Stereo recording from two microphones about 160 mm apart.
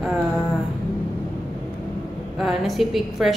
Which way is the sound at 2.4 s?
Centre (ahead or behind).